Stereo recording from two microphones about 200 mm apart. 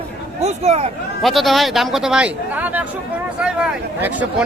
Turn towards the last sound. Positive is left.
turn(degrees=-5)  # may be behind; listen again after turning